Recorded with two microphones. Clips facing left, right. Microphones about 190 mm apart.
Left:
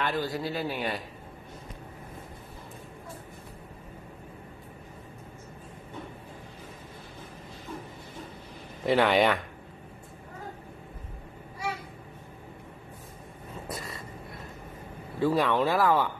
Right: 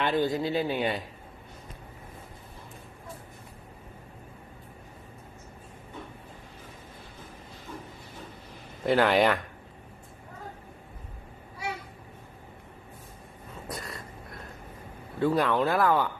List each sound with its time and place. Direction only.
0.0 s speech: 20° right (ahead or behind)
8.8 s speech: centre (ahead or behind)
13.7 s a sound: centre (ahead or behind)
15.1 s speech: centre (ahead or behind)